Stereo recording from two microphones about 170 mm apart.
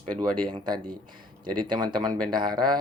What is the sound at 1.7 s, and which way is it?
Speech, 25° right (ahead or behind).